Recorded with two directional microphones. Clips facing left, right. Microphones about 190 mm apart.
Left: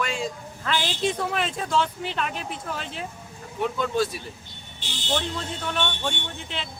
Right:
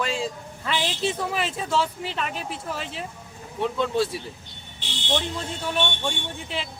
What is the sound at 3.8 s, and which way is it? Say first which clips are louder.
Speech: right 2 dB; 25° right (ahead or behind).